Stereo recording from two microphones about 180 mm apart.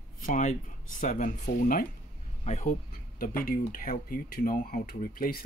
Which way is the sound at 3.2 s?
50° left (ahead or behind).